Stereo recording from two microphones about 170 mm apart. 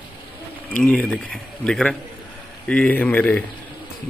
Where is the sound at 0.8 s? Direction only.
10° left (ahead or behind).